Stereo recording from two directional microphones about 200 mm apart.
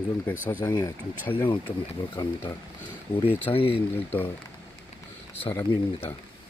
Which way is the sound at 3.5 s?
30° left (ahead or behind).